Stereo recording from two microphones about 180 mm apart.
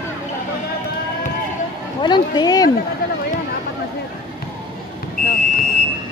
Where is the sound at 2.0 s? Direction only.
25° left (ahead or behind).